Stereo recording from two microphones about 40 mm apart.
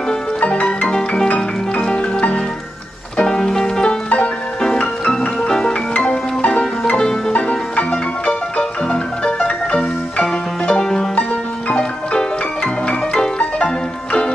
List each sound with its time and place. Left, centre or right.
0.4 s music: left
0.9 s music: centre
5.5 s music: centre
5.9 s music: left
7.0 s music: centre
7.3 s music: left
10.7 s music: centre